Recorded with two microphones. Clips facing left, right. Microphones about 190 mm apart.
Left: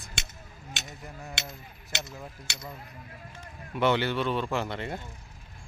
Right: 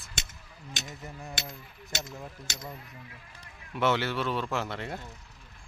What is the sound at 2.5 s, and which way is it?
Speech, 40° right (ahead or behind).